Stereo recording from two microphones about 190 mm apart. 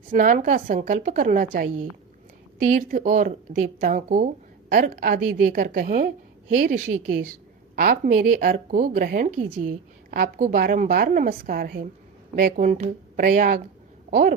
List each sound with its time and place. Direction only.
0.1 s a woman's voice: 45° right (ahead or behind)
2.7 s a woman's voice: 45° right (ahead or behind)